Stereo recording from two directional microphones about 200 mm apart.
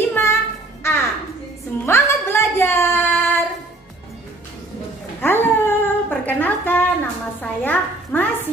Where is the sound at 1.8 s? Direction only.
15° left (ahead or behind).